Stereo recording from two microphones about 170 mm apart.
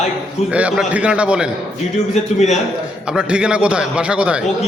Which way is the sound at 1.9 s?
40° left (ahead or behind).